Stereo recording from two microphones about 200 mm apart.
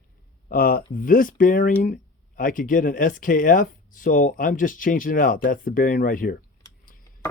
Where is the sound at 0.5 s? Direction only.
45° left (ahead or behind).